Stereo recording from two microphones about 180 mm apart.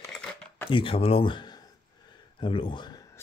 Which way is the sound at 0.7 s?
30° left (ahead or behind).